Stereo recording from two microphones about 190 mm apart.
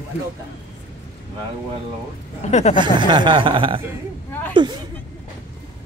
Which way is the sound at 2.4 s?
35° left (ahead or behind).